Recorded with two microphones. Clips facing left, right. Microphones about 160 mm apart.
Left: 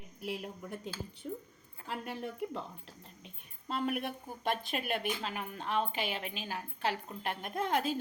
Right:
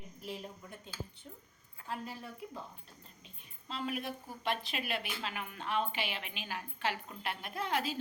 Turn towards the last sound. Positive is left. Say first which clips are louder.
# left 3 dB
turn(degrees=45)  # may be behind; listen again after turning